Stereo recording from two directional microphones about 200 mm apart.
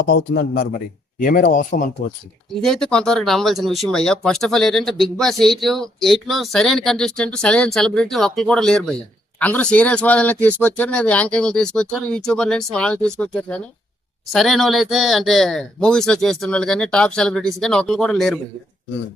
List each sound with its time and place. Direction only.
0.1 s speech: 50° left (ahead or behind)
2.6 s speech: centre (ahead or behind)